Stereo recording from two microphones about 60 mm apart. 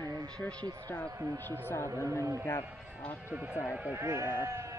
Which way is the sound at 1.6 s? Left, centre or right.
Left.